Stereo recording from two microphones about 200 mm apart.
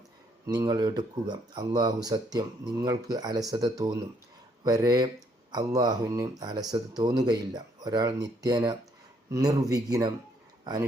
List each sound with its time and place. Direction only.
0.4 s speech: 20° right (ahead or behind)